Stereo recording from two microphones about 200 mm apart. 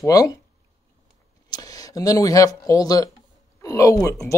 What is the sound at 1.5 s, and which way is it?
Speech, 20° left (ahead or behind).